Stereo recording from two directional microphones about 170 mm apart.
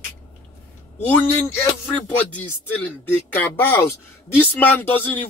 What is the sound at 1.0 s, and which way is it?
Speech, 10° left (ahead or behind).